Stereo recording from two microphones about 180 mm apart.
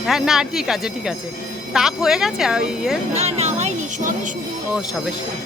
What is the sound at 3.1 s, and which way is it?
Music, 35° right (ahead or behind).